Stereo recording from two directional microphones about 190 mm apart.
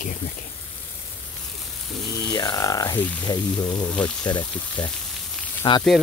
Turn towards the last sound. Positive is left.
turn(degrees=25)  # may be behind; listen again after turning